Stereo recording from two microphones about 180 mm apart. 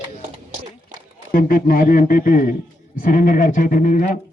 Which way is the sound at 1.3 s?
55° left (ahead or behind).